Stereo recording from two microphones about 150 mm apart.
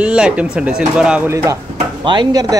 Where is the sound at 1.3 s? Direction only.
20° right (ahead or behind).